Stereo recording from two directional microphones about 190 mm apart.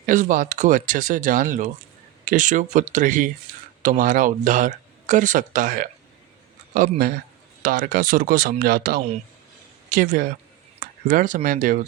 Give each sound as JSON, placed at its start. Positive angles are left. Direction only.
{"t": 0.0, "sound": "speech", "side_deg": -45}